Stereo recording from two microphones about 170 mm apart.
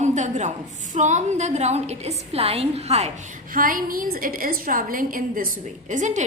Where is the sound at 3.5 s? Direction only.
55° right (ahead or behind).